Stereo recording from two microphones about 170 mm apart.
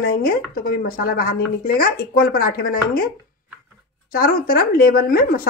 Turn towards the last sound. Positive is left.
turn(degrees=60)  # may be behind; listen again after turning